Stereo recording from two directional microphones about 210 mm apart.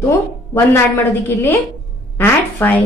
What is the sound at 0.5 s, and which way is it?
A woman's voice, 10° left (ahead or behind).